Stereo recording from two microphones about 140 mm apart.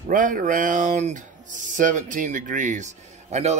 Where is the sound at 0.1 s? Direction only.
70° right (ahead or behind).